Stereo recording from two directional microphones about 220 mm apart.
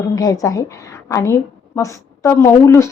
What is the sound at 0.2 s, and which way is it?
A woman's voice, 15° left (ahead or behind).